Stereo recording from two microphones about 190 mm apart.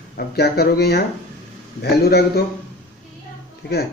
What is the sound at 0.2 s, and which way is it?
Speech, 55° left (ahead or behind).